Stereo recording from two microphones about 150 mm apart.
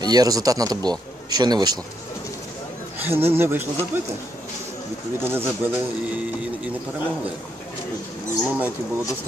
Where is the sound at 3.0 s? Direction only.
15° right (ahead or behind).